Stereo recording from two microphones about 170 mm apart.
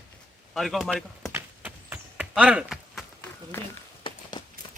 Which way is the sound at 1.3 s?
10° right (ahead or behind).